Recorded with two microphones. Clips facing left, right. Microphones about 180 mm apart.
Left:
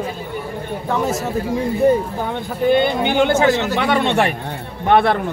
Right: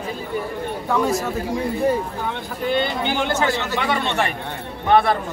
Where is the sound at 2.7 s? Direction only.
55° left (ahead or behind).